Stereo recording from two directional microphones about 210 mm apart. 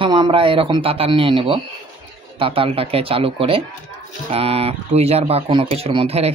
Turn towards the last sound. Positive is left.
turn(degrees=-25)  # may be behind; listen again after turning